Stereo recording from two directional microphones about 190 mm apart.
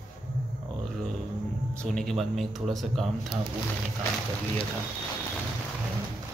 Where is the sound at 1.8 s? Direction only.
Centre (ahead or behind).